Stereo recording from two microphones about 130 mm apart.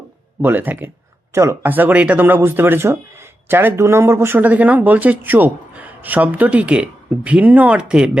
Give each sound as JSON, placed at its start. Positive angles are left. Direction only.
{"t": 0.4, "sound": "speech", "side_deg": -15}